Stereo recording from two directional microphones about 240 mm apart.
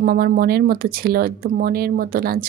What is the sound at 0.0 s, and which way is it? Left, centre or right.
A woman's voice, right.